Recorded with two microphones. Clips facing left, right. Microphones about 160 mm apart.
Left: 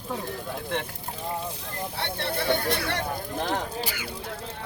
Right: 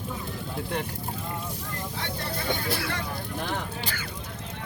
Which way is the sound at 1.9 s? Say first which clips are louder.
Left 5 dB; 65° left (ahead or behind).